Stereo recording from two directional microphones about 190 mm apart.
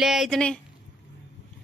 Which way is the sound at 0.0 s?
Centre (ahead or behind).